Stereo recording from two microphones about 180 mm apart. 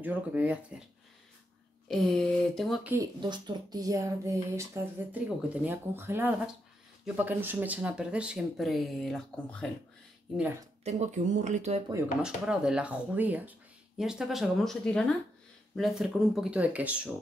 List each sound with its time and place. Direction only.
0.0 s speech: 10° right (ahead or behind)
1.9 s speech: centre (ahead or behind)
3.2 s speech: 25° right (ahead or behind); by 9.7 s 5° left (ahead or behind)
10.8 s speech: 40° right (ahead or behind)
12.2 s speech: 5° right (ahead or behind)